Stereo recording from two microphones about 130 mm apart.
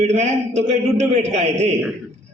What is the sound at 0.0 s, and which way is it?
A man's voice, 60° right (ahead or behind).